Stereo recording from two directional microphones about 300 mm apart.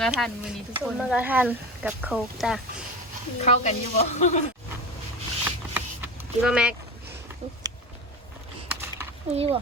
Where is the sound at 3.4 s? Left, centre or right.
Left.